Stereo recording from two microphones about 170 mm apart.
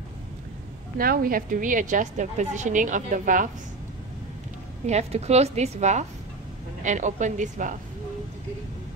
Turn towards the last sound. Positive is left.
turn(degrees=-45)  # may be behind; listen again after turning